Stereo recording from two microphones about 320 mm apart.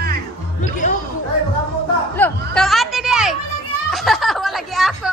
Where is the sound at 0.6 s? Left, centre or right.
Left.